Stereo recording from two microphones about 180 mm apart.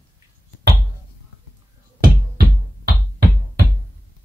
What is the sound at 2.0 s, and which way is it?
Music, 55° right (ahead or behind).